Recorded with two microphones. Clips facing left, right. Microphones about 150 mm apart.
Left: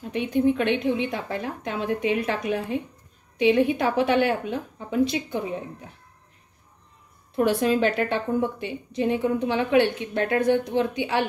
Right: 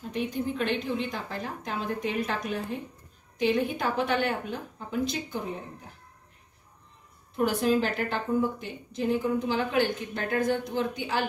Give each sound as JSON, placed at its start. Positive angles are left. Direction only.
{"t": 0.1, "sound": "a woman's voice", "side_deg": 65}
{"t": 7.3, "sound": "a woman's voice", "side_deg": 75}